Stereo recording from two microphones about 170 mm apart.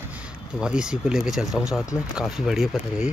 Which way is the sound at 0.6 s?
5° right (ahead or behind).